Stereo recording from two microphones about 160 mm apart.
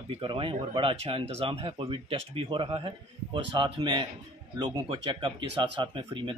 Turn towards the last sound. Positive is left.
turn(degrees=-30)  # may be behind; listen again after turning